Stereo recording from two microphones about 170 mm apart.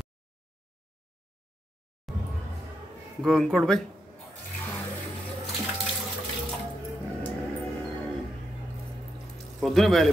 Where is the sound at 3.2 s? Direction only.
Centre (ahead or behind).